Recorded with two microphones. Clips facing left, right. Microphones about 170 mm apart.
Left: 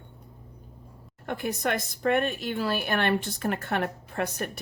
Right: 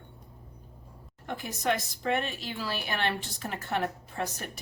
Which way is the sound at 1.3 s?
55° left (ahead or behind).